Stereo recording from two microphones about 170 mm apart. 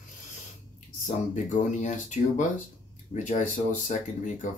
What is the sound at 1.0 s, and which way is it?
Speech, 45° left (ahead or behind).